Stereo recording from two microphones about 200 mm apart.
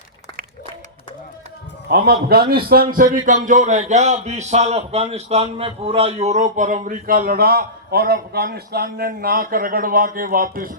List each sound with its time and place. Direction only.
1.9 s a man's voice: 55° right (ahead or behind)